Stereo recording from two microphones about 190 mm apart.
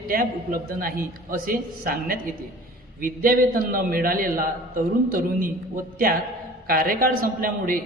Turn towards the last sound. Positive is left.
turn(degrees=-50)  # may be behind; listen again after turning